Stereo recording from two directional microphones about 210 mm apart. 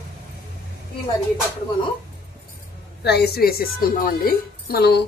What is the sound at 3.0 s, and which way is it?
A woman's voice, 50° left (ahead or behind).